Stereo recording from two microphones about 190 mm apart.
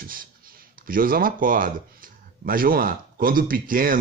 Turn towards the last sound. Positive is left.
turn(degrees=-50)  # may be behind; listen again after turning